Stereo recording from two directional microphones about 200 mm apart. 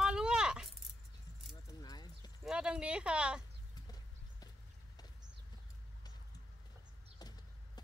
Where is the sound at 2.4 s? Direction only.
5° right (ahead or behind).